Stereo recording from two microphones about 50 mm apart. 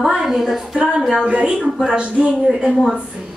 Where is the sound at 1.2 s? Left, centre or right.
Right.